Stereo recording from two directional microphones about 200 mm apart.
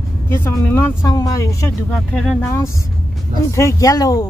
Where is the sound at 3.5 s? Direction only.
15° left (ahead or behind).